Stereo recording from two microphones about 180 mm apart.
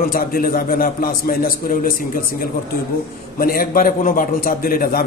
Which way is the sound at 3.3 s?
50° left (ahead or behind).